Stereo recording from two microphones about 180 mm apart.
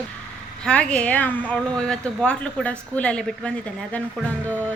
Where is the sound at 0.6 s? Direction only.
5° left (ahead or behind).